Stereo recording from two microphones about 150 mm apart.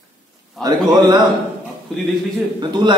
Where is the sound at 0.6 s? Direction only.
25° right (ahead or behind).